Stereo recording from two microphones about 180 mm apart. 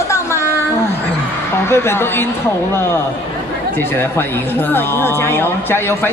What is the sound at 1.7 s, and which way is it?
A woman's voice, 15° left (ahead or behind).